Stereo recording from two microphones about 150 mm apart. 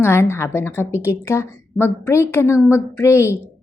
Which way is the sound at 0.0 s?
15° left (ahead or behind).